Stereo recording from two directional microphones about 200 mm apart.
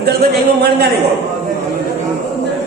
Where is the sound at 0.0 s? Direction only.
55° right (ahead or behind).